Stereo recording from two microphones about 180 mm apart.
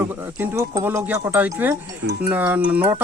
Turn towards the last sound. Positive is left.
turn(degrees=-10)  # may be behind; listen again after turning